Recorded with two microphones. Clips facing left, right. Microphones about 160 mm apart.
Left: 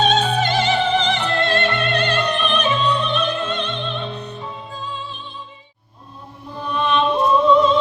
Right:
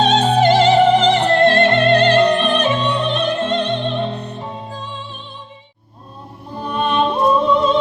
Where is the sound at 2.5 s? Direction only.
45° right (ahead or behind).